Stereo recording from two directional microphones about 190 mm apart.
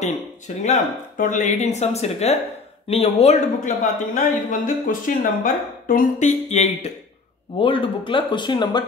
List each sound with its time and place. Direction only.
0.6 s speech: 40° left (ahead or behind); by 8.8 s 25° left (ahead or behind)